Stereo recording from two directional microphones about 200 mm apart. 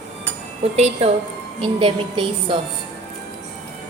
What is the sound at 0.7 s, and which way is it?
A woman's voice, 30° right (ahead or behind).